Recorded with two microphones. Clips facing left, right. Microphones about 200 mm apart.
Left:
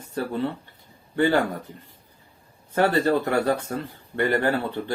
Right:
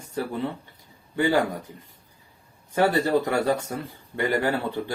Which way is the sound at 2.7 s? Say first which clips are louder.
Left 1 dB; 15° right (ahead or behind).